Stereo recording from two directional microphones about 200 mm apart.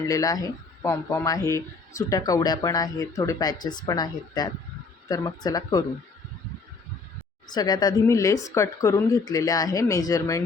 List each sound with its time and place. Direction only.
0.0 s speech: 15° left (ahead or behind)
7.4 s speech: 20° left (ahead or behind)